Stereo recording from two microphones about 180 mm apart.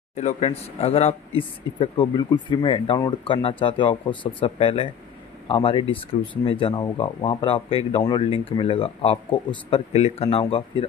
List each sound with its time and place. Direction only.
0.1 s speech: 40° left (ahead or behind)